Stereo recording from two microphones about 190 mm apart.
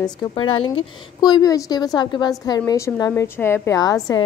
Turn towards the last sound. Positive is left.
turn(degrees=20)  # may be behind; listen again after turning